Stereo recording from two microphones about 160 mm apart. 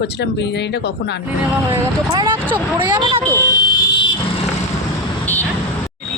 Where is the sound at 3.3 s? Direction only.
20° left (ahead or behind).